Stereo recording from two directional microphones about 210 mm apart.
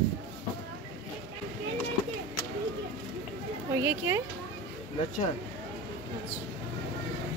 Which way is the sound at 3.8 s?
10° right (ahead or behind).